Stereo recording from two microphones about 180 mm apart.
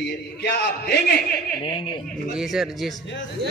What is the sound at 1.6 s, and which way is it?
Speech, 25° left (ahead or behind).